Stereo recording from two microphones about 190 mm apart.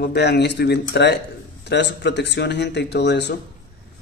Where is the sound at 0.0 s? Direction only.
60° left (ahead or behind).